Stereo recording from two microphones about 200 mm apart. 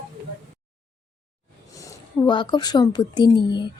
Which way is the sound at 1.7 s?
15° left (ahead or behind).